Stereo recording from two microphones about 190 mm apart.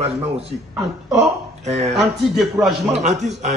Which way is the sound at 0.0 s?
30° right (ahead or behind).